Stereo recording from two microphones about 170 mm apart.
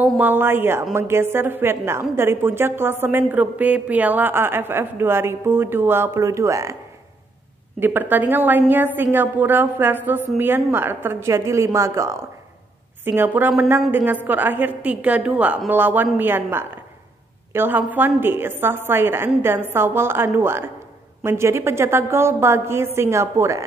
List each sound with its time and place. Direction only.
0.0 s a woman's voice: 10° right (ahead or behind)
7.8 s a woman's voice: 10° right (ahead or behind)